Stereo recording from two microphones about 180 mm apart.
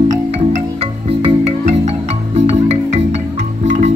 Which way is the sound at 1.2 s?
35° right (ahead or behind).